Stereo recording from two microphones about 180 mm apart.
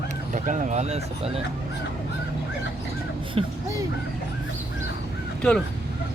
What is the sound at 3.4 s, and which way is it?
Speech, 30° right (ahead or behind).